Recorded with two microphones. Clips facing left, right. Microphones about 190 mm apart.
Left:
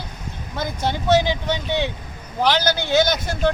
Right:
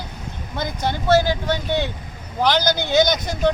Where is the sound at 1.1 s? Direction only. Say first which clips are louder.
Right 1 dB; 5° right (ahead or behind).